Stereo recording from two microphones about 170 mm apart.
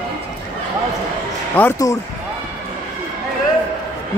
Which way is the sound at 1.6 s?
15° left (ahead or behind).